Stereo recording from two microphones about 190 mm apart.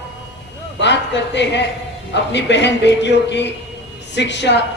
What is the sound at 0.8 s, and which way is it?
Speech, 65° left (ahead or behind).